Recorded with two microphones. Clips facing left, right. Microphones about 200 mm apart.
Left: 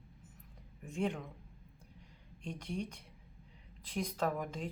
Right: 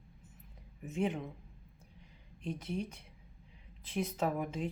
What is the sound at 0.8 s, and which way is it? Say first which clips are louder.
Speech: right 2 dB; 5° right (ahead or behind).